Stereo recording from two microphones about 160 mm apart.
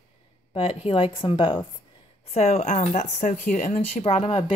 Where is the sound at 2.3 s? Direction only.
45° left (ahead or behind).